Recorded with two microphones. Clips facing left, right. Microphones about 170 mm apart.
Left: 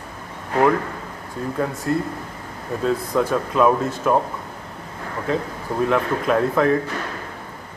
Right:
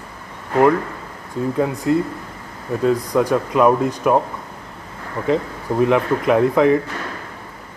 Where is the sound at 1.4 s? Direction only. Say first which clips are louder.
Right 5 dB; 20° right (ahead or behind).